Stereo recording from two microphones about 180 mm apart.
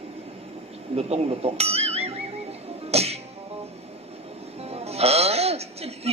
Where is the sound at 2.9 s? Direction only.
35° right (ahead or behind).